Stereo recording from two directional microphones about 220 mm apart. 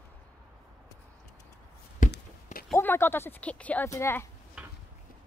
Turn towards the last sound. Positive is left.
turn(degrees=-5)  # may be behind; listen again after turning